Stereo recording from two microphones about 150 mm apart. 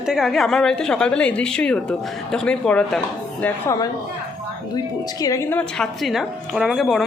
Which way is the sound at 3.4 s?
20° left (ahead or behind).